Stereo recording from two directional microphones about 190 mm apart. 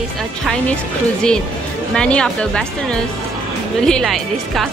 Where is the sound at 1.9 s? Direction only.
5° left (ahead or behind).